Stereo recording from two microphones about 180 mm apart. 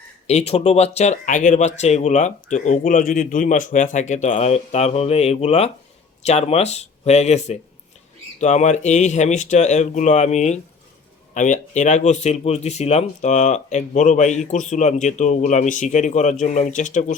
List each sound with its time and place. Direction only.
0.3 s speech: 35° left (ahead or behind)